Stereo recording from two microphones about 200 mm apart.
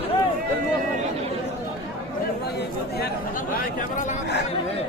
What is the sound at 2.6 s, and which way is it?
Chatter, 50° left (ahead or behind).